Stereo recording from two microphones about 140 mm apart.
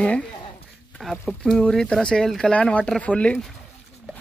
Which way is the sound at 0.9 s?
Centre (ahead or behind).